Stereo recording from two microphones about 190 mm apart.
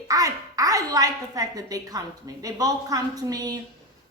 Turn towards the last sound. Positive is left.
turn(degrees=-20)  # may be behind; listen again after turning